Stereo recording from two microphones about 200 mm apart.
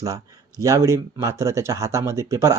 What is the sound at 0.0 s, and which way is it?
Speech, 15° right (ahead or behind).